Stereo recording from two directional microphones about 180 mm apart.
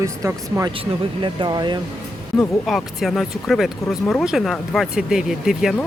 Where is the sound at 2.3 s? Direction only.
Centre (ahead or behind).